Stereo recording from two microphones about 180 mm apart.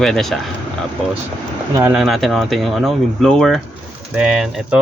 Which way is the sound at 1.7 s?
10° right (ahead or behind).